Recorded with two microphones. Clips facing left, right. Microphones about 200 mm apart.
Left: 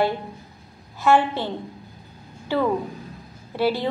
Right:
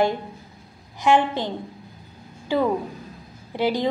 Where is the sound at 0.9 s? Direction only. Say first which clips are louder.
Even; 15° right (ahead or behind).